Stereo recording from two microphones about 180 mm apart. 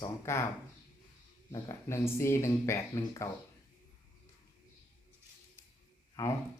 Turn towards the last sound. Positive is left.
turn(degrees=15)  # may be behind; listen again after turning